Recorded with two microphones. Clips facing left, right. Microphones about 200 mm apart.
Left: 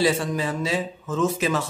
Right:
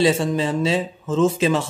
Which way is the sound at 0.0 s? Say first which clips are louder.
Right 4 dB; 25° right (ahead or behind).